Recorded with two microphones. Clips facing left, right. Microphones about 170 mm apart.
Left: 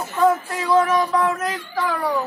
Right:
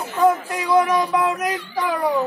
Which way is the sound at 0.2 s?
15° right (ahead or behind).